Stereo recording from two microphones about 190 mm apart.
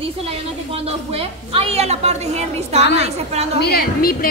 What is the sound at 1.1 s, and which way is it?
A woman's voice, 30° right (ahead or behind).